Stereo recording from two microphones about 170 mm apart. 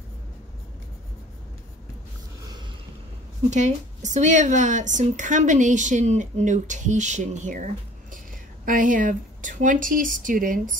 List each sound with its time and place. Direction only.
3.4 s speech: 45° right (ahead or behind)